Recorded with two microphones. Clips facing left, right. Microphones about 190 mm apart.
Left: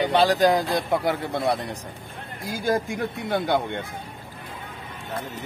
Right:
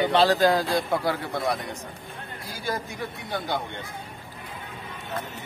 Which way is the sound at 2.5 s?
50° left (ahead or behind).